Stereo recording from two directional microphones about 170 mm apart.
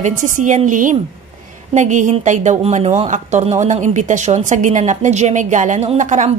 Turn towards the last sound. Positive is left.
turn(degrees=-45)  # may be behind; listen again after turning